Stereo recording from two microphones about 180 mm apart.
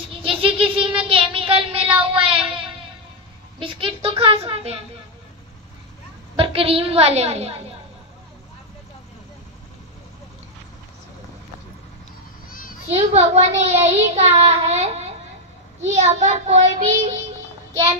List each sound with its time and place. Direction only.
0.1 s a sound: 30° right (ahead or behind)
6.3 s a woman's voice: 30° right (ahead or behind)
12.4 s children playing: 50° left (ahead or behind)
12.9 s a child's voice: 35° right (ahead or behind)